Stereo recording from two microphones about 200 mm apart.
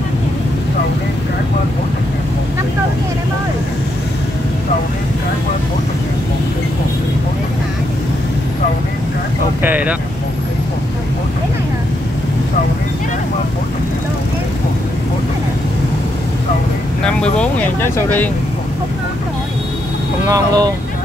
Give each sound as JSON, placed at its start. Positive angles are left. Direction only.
{"t": 9.6, "sound": "speech", "side_deg": -10}
{"t": 17.0, "sound": "speech", "side_deg": 5}
{"t": 20.2, "sound": "speech", "side_deg": -15}